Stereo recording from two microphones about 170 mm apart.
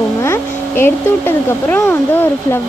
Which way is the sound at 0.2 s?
15° left (ahead or behind).